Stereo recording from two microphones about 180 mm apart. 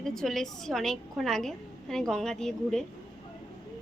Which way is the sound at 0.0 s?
Centre (ahead or behind).